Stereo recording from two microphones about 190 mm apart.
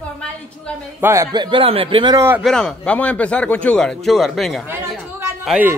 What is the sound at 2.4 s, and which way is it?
Speech, 5° left (ahead or behind).